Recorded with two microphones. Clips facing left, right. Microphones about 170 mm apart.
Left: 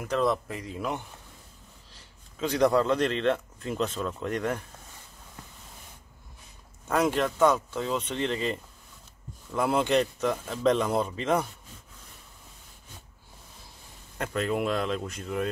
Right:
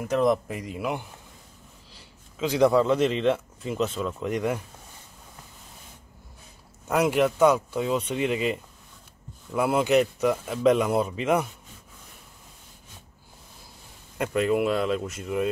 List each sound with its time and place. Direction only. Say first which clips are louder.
0.1 s a man's voice: right 4 dB; 15° right (ahead or behind)
2.3 s speech: right 3 dB; 5° right (ahead or behind)
6.9 s a man's voice: right 3 dB; 10° right (ahead or behind)
14.1 s speech: right 5 dB; 10° right (ahead or behind)